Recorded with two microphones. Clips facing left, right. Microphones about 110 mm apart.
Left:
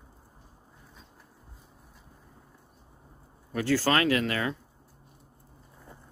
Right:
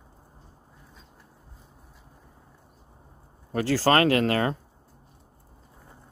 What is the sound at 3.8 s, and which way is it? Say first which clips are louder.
Speech: right 8 dB; 45° right (ahead or behind).